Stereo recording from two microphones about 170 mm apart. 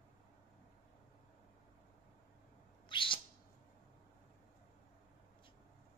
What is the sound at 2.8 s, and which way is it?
Bird, 30° left (ahead or behind).